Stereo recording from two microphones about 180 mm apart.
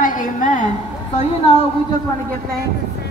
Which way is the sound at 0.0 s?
50° left (ahead or behind).